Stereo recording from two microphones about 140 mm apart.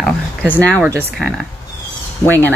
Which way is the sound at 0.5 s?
10° left (ahead or behind).